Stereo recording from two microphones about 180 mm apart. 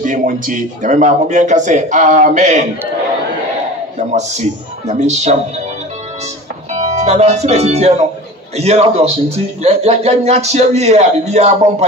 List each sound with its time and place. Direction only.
0.0 s speech: 45° right (ahead or behind)
4.1 s speech: 40° right (ahead or behind)
6.7 s speech: 40° right (ahead or behind)